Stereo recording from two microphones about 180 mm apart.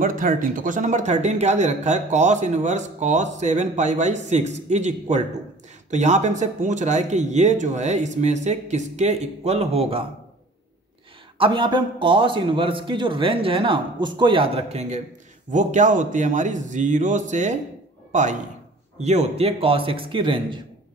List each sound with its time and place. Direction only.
0.0 s speech: 50° right (ahead or behind); by 10.0 s 35° right (ahead or behind)
11.3 s a man's voice: 30° right (ahead or behind)